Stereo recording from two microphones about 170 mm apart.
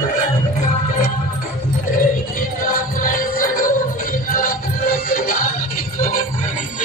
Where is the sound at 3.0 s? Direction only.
55° left (ahead or behind).